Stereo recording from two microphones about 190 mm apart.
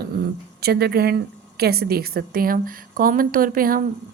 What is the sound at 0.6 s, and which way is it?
A woman's voice, 55° right (ahead or behind).